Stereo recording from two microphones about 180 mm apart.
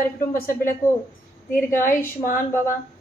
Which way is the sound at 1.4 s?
15° left (ahead or behind).